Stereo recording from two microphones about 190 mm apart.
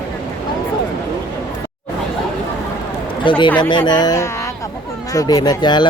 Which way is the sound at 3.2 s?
25° left (ahead or behind).